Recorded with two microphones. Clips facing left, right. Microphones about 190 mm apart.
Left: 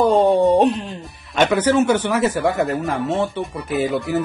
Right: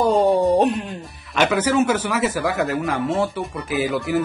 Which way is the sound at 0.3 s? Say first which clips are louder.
Left 2 dB; 20° left (ahead or behind).